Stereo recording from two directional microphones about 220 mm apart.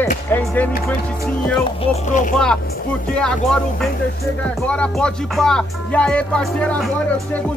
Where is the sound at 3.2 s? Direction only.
Centre (ahead or behind).